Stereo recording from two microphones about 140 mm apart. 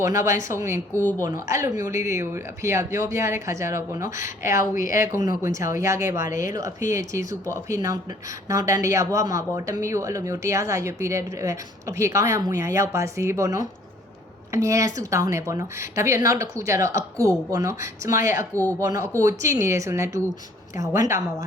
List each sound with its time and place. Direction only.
0.0 s speech: 20° right (ahead or behind)
18.5 s speech: 15° left (ahead or behind)
18.8 s speech: 25° right (ahead or behind)